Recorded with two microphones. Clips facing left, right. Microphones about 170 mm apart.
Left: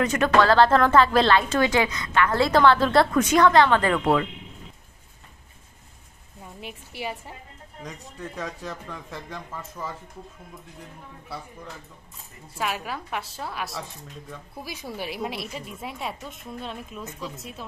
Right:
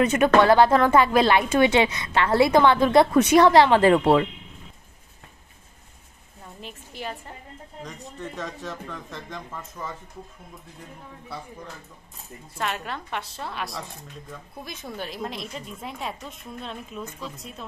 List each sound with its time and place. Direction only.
0.0 s a woman's voice: 20° right (ahead or behind)
6.4 s a woman's voice: 10° left (ahead or behind)
8.4 s a woman's voice: 5° left (ahead or behind)
12.5 s a woman's voice: 5° left (ahead or behind)